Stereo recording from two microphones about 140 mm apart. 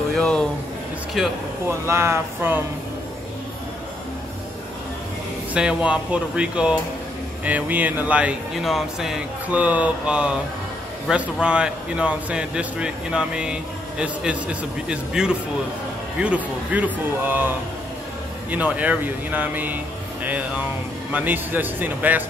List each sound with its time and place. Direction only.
0.1 s a sound: 5° left (ahead or behind)
1.7 s speech: 20° right (ahead or behind)
5.5 s a man's voice: 5° right (ahead or behind)
18.5 s a man's voice: 10° right (ahead or behind)